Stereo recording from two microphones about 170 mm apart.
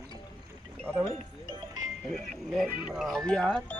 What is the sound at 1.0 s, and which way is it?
Music, 25° right (ahead or behind).